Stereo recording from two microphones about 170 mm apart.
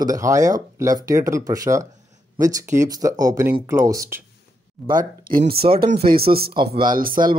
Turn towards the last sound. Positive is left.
turn(degrees=-55)  # may be behind; listen again after turning